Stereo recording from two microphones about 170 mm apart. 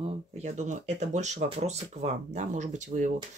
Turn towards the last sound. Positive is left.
turn(degrees=-45)  # may be behind; listen again after turning